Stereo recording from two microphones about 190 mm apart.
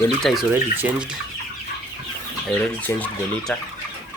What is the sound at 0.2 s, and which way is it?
Speech, centre (ahead or behind).